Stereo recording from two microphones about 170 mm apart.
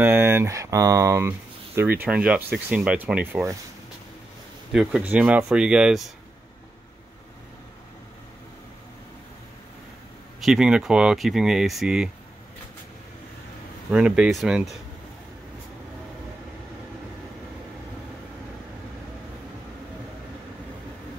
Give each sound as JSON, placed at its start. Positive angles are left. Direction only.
{"t": 0.0, "sound": "speech", "side_deg": -10}
{"t": 5.1, "sound": "speech", "side_deg": -5}
{"t": 10.4, "sound": "speech", "side_deg": -5}
{"t": 13.8, "sound": "speech", "side_deg": -5}